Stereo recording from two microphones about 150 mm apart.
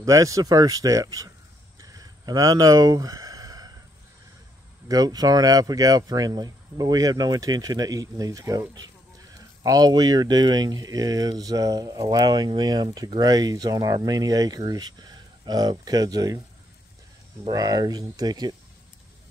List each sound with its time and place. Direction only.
0.0 s speech: 20° right (ahead or behind)
1.8 s a sound: 25° right (ahead or behind)
4.8 s speech: 25° right (ahead or behind)
17.5 s speech: 25° right (ahead or behind)